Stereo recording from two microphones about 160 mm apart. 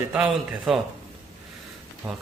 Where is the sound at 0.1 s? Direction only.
10° right (ahead or behind).